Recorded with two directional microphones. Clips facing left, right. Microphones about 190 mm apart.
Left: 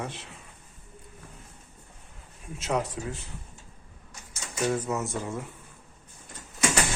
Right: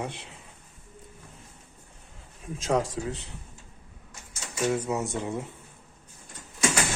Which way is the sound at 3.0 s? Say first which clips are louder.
Right 3 dB; 30° right (ahead or behind).